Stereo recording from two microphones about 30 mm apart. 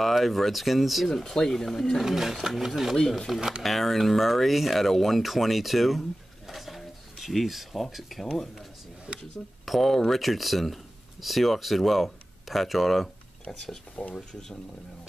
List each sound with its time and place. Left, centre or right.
0.1 s speech: centre
1.2 s speech: centre
2.0 s speech: centre
3.3 s speech: centre
9.7 s speech: centre
13.5 s speech: centre
14.0 s speech: left